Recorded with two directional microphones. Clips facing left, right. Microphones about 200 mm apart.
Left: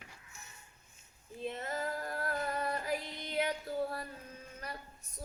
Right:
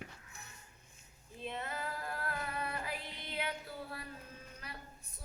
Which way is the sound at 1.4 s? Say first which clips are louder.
Left 4 dB; 40° left (ahead or behind).